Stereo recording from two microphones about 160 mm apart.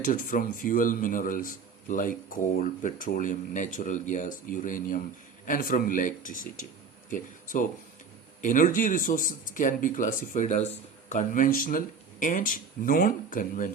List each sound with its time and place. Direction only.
0.0 s a man's voice: 55° left (ahead or behind)